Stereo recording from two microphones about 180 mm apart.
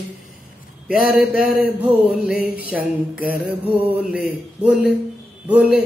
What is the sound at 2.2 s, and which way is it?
Mantra, 5° right (ahead or behind).